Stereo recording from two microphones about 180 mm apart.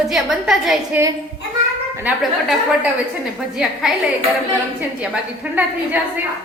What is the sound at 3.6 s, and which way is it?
Speech, 5° right (ahead or behind).